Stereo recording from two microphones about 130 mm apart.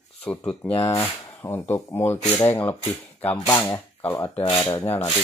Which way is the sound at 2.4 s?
25° left (ahead or behind).